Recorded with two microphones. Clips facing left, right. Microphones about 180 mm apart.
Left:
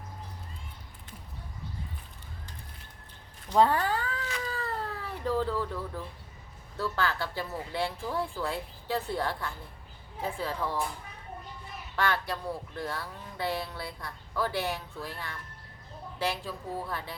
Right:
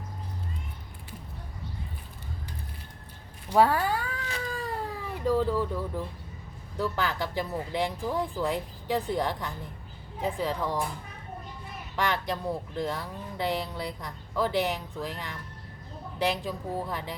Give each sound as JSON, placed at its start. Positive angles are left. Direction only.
{"t": 3.5, "sound": "cat", "side_deg": -10}
{"t": 6.7, "sound": "speech", "side_deg": -15}
{"t": 11.9, "sound": "speech", "side_deg": -15}